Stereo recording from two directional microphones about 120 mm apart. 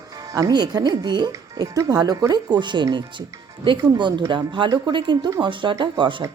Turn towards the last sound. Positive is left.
turn(degrees=-40)  # may be behind; listen again after turning